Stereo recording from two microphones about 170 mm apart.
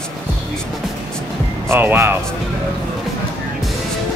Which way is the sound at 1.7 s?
15° right (ahead or behind).